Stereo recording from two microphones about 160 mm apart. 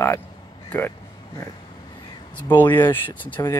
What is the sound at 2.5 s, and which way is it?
Speech, 10° left (ahead or behind).